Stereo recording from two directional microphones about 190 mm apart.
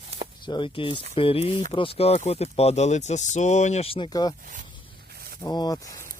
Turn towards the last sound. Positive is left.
turn(degrees=15)  # may be behind; listen again after turning